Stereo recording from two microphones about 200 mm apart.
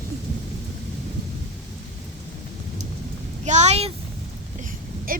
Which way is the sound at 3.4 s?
35° right (ahead or behind).